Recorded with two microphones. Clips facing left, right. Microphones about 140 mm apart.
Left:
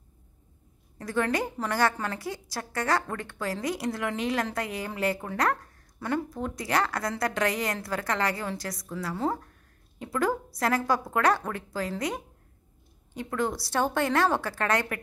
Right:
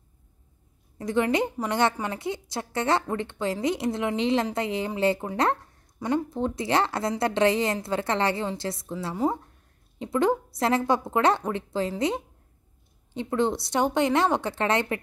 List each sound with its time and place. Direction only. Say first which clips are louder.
0.9 s a woman's voice: right 4 dB; 20° right (ahead or behind)
9.1 s a woman's voice: right 4 dB; 15° right (ahead or behind)
13.1 s a woman's voice: right 4 dB; 25° right (ahead or behind)